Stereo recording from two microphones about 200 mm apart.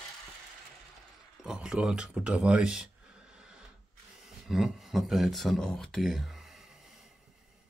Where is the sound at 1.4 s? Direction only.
5° right (ahead or behind).